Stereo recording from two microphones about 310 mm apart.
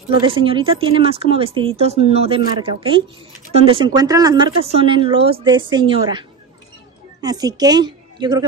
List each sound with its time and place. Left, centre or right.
0.1 s a woman's voice: centre